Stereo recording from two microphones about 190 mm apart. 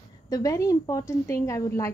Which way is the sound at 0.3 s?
20° left (ahead or behind).